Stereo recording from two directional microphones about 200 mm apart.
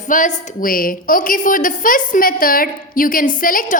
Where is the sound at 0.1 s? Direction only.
40° left (ahead or behind).